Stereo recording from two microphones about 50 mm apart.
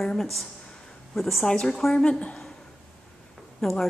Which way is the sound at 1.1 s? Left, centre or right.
Centre.